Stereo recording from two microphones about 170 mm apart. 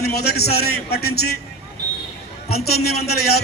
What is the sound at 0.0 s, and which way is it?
A man's voice, 70° left (ahead or behind).